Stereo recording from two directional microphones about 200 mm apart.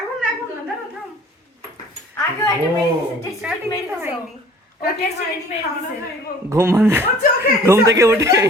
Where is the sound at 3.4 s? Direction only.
5° right (ahead or behind).